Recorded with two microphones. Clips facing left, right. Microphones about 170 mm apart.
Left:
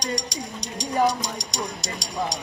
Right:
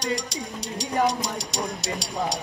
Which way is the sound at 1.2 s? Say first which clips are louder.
Right 1 dB; centre (ahead or behind).